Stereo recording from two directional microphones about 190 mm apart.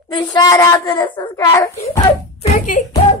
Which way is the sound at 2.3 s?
40° left (ahead or behind).